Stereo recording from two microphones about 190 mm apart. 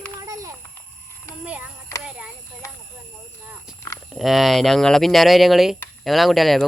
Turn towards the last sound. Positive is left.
turn(degrees=0)  # may be behind; listen again after turning